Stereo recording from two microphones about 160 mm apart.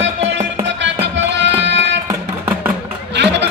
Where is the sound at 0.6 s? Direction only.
90° right.